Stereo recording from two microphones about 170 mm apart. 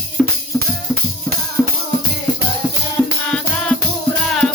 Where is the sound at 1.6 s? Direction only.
15° left (ahead or behind).